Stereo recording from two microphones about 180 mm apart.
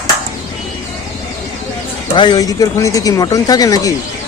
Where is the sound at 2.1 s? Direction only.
25° left (ahead or behind).